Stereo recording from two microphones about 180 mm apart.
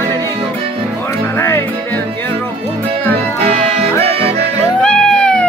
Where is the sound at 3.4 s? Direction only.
35° right (ahead or behind).